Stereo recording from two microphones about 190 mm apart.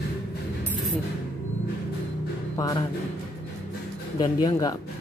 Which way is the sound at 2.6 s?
20° left (ahead or behind).